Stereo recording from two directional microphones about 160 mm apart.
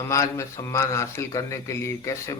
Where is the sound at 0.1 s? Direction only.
20° left (ahead or behind).